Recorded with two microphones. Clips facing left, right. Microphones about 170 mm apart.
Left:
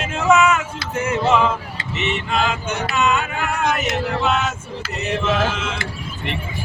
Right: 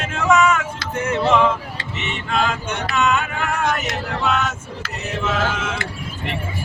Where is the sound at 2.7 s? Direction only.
Centre (ahead or behind).